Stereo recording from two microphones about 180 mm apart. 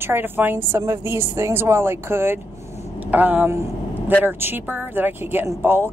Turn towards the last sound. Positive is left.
turn(degrees=-15)  # may be behind; listen again after turning